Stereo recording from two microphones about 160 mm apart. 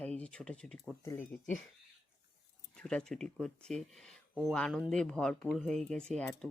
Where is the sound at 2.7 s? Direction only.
5° left (ahead or behind).